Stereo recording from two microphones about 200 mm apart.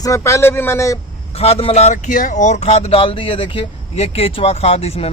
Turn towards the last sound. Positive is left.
turn(degrees=30)  # may be behind; listen again after turning